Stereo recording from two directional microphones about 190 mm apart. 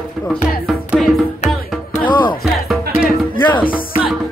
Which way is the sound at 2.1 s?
25° left (ahead or behind).